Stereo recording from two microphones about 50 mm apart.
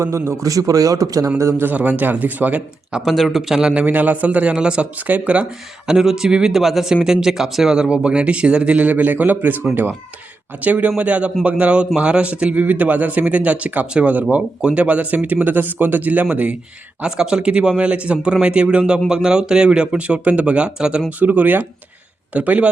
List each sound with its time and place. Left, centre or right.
0.0 s a man's voice: right
1.7 s speech: right
3.0 s speech: centre
3.5 s speech: centre
3.8 s speech: right
4.5 s speech: centre
5.9 s speech: centre
6.6 s speech: centre; by 9.6 s right
10.6 s speech: right
17.1 s speech: centre
21.2 s speech: right